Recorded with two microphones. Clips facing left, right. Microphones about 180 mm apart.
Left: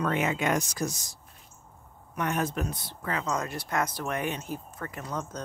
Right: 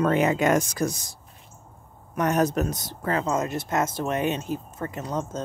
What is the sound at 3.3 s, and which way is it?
Speech, 25° right (ahead or behind).